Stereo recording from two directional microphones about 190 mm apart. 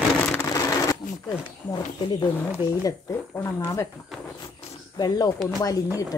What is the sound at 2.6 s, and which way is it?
Speech, 15° left (ahead or behind).